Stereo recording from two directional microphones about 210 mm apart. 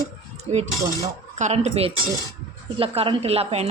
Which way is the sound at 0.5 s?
30° right (ahead or behind).